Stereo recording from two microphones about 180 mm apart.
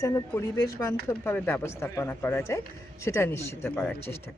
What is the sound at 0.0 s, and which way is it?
A woman's voice, 15° left (ahead or behind).